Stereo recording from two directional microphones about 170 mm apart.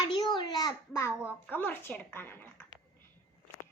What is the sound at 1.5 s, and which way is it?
Speech, 10° left (ahead or behind).